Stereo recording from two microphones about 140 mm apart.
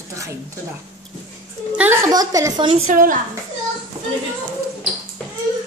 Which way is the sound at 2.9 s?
75° right (ahead or behind).